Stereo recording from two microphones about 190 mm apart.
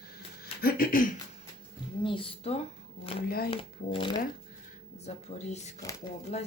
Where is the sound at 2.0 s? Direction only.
30° left (ahead or behind).